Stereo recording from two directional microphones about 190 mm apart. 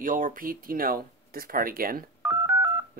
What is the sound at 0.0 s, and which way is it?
Speech, 45° right (ahead or behind).